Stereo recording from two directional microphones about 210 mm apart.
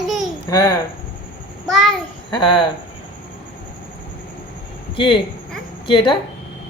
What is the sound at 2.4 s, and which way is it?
Speech, 20° left (ahead or behind).